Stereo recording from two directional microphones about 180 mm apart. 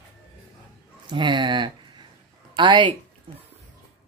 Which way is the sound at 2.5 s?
25° right (ahead or behind).